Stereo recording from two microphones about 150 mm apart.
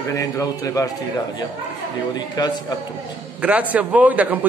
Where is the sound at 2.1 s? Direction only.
25° left (ahead or behind).